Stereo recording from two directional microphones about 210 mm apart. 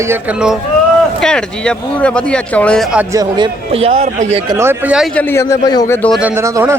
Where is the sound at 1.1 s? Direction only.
5° left (ahead or behind).